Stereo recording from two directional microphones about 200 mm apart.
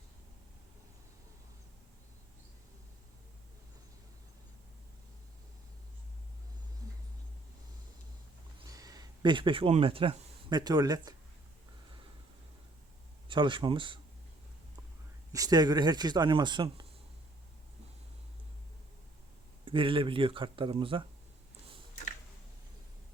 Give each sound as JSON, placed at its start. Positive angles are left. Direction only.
{"t": 8.6, "sound": "speech", "side_deg": -20}
{"t": 13.2, "sound": "a man's voice", "side_deg": -25}
{"t": 15.3, "sound": "a man's voice", "side_deg": -20}
{"t": 19.6, "sound": "a man's voice", "side_deg": -25}